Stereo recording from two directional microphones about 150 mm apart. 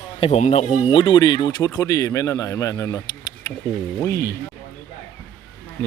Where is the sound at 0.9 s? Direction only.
35° left (ahead or behind).